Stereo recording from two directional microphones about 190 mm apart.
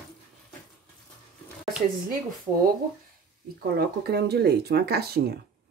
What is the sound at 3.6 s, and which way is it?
Speech, 55° right (ahead or behind).